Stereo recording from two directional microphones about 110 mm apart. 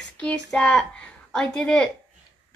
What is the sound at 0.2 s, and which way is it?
A woman's voice, 10° left (ahead or behind).